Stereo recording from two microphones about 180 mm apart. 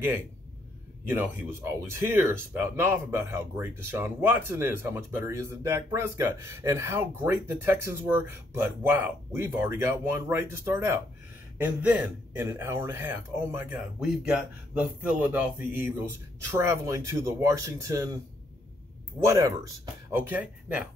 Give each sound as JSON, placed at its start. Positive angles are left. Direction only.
{"t": 1.0, "sound": "speech", "side_deg": -10}
{"t": 13.9, "sound": "speech", "side_deg": -5}